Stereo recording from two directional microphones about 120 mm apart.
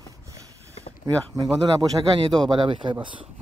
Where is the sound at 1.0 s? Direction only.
35° right (ahead or behind).